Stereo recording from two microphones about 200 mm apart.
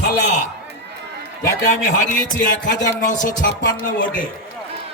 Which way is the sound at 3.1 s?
40° left (ahead or behind).